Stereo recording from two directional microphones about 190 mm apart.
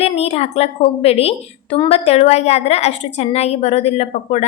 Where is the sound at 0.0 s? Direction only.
35° left (ahead or behind).